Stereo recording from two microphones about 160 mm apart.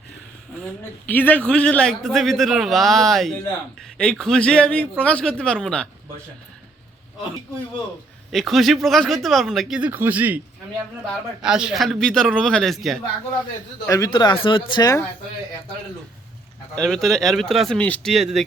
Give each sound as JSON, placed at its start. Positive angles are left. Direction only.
{"t": 0.6, "sound": "a man's voice", "side_deg": 10}
{"t": 8.3, "sound": "a man's voice", "side_deg": 0}
{"t": 11.4, "sound": "a man's voice", "side_deg": -5}
{"t": 13.8, "sound": "speech", "side_deg": 20}
{"t": 16.7, "sound": "a man's voice", "side_deg": 0}